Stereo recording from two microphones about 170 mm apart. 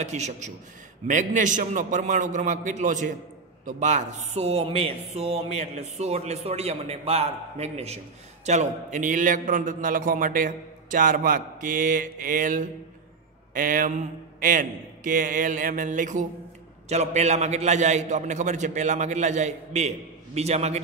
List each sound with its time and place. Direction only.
0.0 s a man's voice: 40° right (ahead or behind)